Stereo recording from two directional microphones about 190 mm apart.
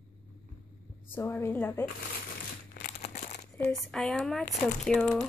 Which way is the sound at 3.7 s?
5° left (ahead or behind).